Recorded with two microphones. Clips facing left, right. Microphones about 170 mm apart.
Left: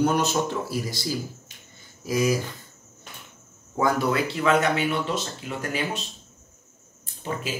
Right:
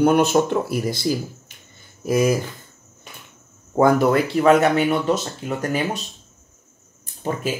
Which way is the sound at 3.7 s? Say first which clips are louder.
Right 7 dB; 55° right (ahead or behind).